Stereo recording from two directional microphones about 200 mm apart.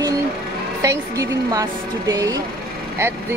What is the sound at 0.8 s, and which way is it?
Speech, 15° right (ahead or behind).